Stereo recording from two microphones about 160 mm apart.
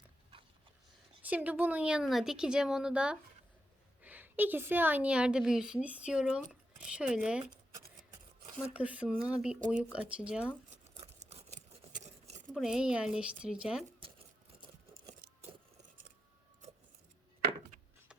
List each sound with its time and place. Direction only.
1.2 s a woman's voice: 10° right (ahead or behind)
8.7 s a woman's voice: 10° right (ahead or behind)
10.8 s a sound: 40° right (ahead or behind)
12.5 s speech: 5° right (ahead or behind)